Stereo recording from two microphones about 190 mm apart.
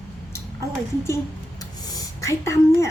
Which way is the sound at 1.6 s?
15° left (ahead or behind).